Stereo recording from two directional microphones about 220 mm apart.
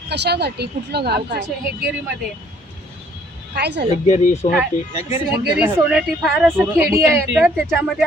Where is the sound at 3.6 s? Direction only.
50° right (ahead or behind).